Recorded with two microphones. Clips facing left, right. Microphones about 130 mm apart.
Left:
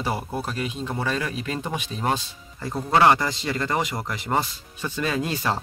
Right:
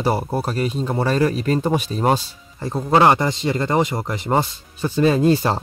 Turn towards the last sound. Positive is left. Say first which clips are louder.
# right 9 dB
turn(degrees=-30)  # may be behind; listen again after turning